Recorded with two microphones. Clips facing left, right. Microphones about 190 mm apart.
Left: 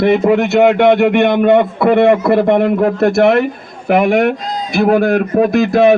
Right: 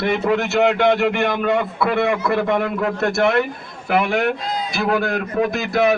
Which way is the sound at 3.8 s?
45° left (ahead or behind).